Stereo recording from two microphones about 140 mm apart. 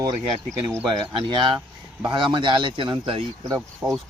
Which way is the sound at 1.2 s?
35° right (ahead or behind).